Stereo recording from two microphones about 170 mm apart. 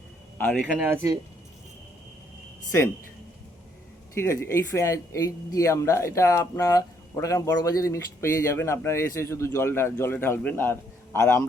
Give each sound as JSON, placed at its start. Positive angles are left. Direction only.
{"t": 0.3, "sound": "speech", "side_deg": 5}
{"t": 4.1, "sound": "speech", "side_deg": 15}